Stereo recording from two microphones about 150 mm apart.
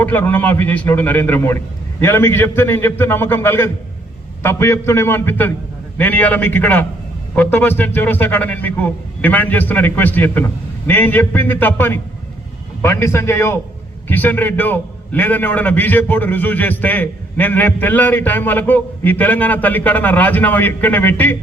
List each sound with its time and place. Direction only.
0.0 s a man's voice: 10° left (ahead or behind)